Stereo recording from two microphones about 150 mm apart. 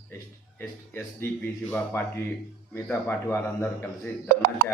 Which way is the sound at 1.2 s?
15° left (ahead or behind).